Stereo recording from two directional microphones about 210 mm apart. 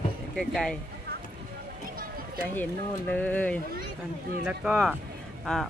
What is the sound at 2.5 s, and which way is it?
Speech, 10° left (ahead or behind).